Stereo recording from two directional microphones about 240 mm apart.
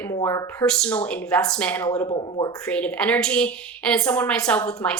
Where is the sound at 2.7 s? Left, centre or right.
Centre.